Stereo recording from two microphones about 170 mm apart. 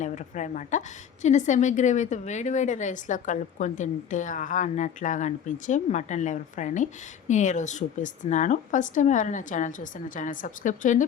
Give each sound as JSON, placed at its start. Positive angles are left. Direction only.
{"t": 0.0, "sound": "a woman's voice", "side_deg": 45}